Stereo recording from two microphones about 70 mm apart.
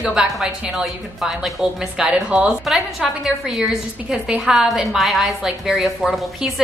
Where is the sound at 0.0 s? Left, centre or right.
Centre.